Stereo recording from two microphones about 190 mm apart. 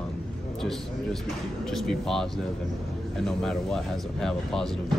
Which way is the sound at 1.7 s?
Centre (ahead or behind).